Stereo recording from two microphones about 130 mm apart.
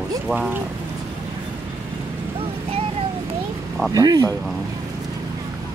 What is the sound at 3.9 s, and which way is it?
Speech, 30° right (ahead or behind).